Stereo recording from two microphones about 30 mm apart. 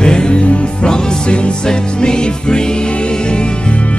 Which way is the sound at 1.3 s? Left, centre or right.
Left.